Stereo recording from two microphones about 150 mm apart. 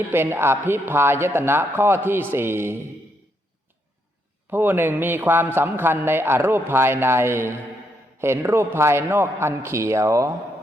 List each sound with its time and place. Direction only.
0.1 s a man's voice: 15° right (ahead or behind)
4.5 s a man's voice: 10° right (ahead or behind)